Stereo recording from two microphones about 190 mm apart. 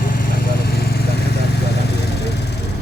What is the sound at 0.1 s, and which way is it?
Vehicle, 50° left (ahead or behind).